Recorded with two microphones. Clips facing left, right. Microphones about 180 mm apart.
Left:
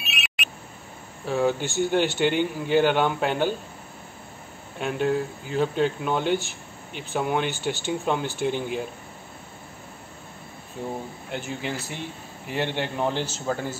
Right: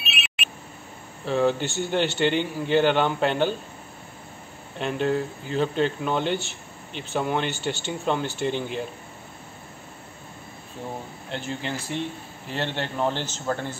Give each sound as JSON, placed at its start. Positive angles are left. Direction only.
{"t": 1.2, "sound": "speech", "side_deg": 10}
{"t": 4.7, "sound": "speech", "side_deg": 10}
{"t": 11.2, "sound": "speech", "side_deg": 10}